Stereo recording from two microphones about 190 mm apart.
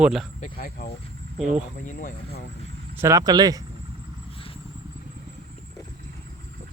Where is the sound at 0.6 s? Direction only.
50° left (ahead or behind).